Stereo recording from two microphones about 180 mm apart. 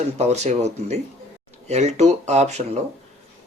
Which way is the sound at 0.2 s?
40° right (ahead or behind).